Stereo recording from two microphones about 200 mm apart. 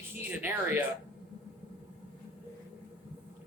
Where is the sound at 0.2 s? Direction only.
10° right (ahead or behind).